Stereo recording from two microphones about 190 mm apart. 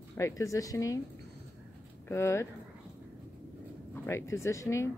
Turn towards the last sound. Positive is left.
turn(degrees=15)  # may be behind; listen again after turning